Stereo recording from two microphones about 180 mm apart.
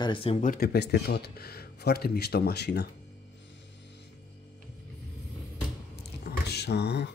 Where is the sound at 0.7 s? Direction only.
65° left (ahead or behind).